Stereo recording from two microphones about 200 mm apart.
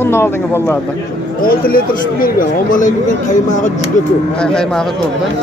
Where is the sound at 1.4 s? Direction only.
45° left (ahead or behind).